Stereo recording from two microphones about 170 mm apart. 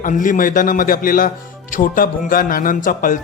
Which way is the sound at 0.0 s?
50° left (ahead or behind).